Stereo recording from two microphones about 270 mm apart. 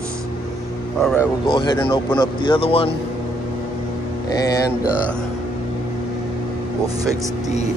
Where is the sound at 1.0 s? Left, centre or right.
Centre.